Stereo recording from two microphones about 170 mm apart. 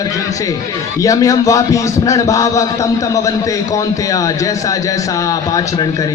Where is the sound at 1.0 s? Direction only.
20° left (ahead or behind).